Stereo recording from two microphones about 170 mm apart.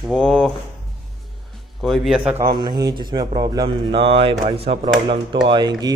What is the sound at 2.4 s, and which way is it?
Speech, 25° right (ahead or behind).